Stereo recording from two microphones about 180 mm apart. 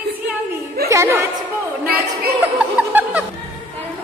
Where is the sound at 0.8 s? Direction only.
15° right (ahead or behind).